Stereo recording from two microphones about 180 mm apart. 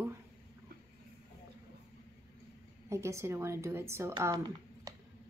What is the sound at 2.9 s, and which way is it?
A woman's voice, 15° right (ahead or behind).